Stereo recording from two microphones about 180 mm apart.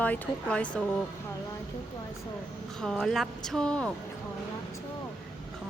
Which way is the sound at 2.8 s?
Centre (ahead or behind).